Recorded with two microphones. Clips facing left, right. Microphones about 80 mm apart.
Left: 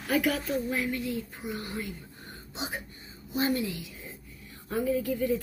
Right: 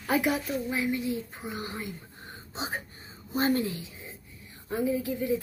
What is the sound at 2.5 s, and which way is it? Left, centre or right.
A woman's voice, right.